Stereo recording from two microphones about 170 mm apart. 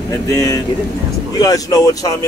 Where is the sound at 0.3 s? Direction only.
20° left (ahead or behind).